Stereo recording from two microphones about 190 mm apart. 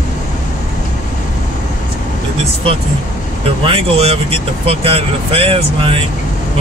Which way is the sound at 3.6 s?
30° right (ahead or behind).